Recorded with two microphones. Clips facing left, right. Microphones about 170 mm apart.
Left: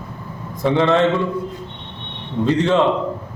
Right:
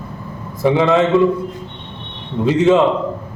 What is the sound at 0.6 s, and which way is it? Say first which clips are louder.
Speech: right 2 dB; 5° right (ahead or behind).